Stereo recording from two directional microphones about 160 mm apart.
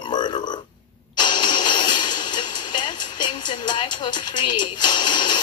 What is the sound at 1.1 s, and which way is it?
Speech, 25° left (ahead or behind).